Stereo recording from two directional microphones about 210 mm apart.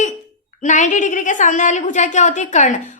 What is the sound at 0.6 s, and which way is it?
A woman's voice, 35° left (ahead or behind).